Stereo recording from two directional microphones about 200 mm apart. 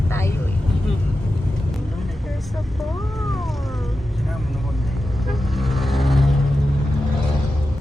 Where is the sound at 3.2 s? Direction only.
Centre (ahead or behind).